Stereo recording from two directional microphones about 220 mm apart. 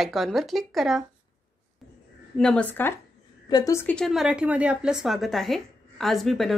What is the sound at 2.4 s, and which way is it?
A woman's voice, 5° left (ahead or behind).